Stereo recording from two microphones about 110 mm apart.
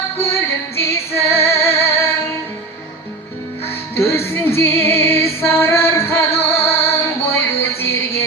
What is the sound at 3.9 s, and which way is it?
Music, 20° left (ahead or behind).